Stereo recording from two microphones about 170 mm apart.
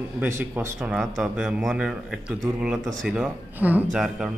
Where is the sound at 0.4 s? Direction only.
10° right (ahead or behind).